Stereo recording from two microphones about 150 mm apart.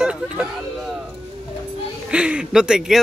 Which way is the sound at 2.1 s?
5° right (ahead or behind).